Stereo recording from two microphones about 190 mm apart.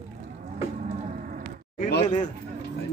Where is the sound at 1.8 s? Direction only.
55° left (ahead or behind).